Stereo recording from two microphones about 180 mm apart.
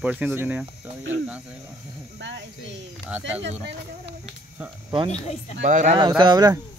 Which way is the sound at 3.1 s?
10° right (ahead or behind).